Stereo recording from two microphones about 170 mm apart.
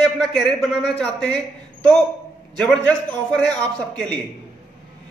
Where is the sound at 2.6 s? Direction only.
5° left (ahead or behind).